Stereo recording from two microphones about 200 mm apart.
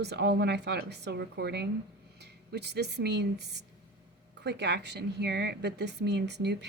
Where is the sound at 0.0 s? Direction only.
55° right (ahead or behind).